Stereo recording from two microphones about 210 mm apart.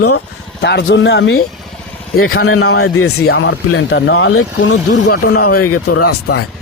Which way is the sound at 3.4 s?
65° left (ahead or behind).